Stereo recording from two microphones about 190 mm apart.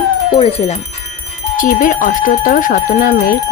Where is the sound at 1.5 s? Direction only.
45° left (ahead or behind).